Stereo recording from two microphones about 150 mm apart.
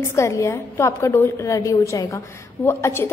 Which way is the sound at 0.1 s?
20° left (ahead or behind).